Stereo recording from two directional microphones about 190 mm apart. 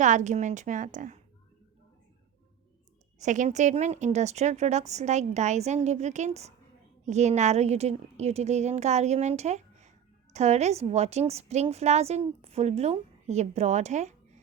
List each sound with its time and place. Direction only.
0.0 s a woman's voice: 40° right (ahead or behind)
3.2 s a woman's voice: 40° right (ahead or behind)